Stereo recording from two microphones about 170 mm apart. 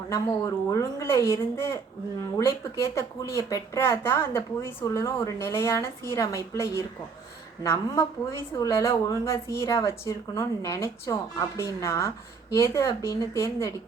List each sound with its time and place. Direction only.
0.1 s speech: 20° left (ahead or behind)